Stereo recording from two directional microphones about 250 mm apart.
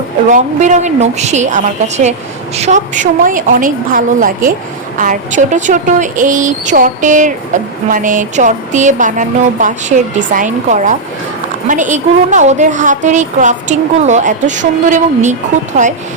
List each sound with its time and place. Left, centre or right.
0.3 s a woman's voice: right